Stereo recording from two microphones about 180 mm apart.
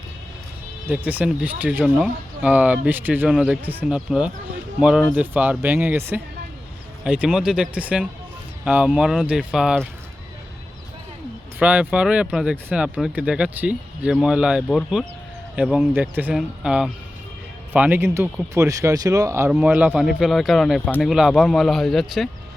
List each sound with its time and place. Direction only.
0.9 s speech: 10° right (ahead or behind)
11.6 s speech: 5° right (ahead or behind)
19.5 s speech: 5° right (ahead or behind)